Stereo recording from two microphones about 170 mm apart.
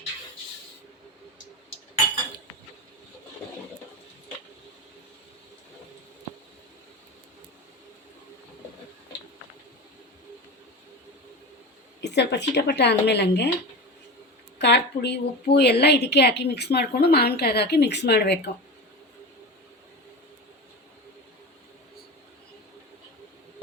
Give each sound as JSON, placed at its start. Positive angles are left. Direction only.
{"t": 11.9, "sound": "a woman's voice", "side_deg": 90}
{"t": 14.6, "sound": "a woman's voice", "side_deg": 80}